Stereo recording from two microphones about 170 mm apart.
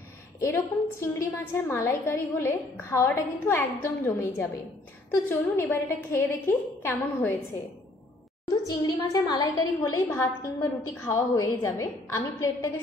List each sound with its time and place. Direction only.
0.4 s a woman's voice: 15° left (ahead or behind)
8.6 s a woman's voice: 25° left (ahead or behind)